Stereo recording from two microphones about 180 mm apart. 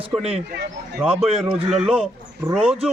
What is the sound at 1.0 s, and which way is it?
Speech, 5° right (ahead or behind).